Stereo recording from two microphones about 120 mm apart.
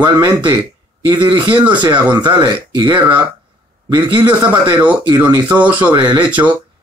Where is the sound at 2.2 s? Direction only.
40° right (ahead or behind).